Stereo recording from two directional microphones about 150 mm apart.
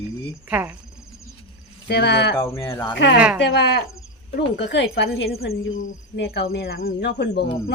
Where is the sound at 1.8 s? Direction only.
90° left.